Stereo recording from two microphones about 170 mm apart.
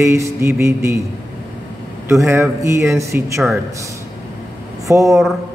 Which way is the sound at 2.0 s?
15° right (ahead or behind).